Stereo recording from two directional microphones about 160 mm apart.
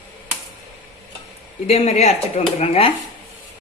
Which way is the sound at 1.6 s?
40° left (ahead or behind).